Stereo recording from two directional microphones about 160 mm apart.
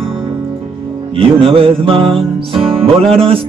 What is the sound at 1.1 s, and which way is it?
Music, 35° right (ahead or behind).